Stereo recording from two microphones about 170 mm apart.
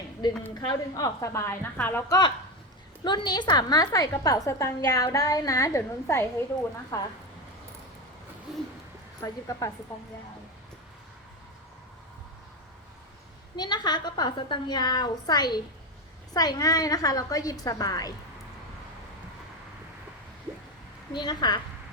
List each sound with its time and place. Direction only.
0.5 s a woman's voice: 25° left (ahead or behind)
8.5 s a sound: 5° right (ahead or behind)
9.2 s a woman's voice: 20° left (ahead or behind)
13.6 s a woman's voice: 25° left (ahead or behind)
21.1 s a woman's voice: 25° left (ahead or behind)